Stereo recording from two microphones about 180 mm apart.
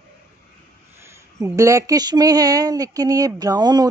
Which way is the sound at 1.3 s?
15° right (ahead or behind).